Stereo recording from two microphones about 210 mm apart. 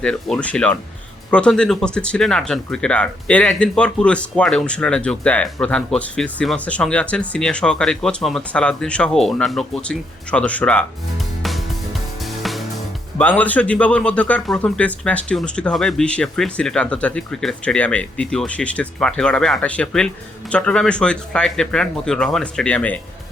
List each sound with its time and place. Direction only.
0.0 s speech: 5° left (ahead or behind)
12.4 s music: centre (ahead or behind)
13.1 s speech: 5° left (ahead or behind)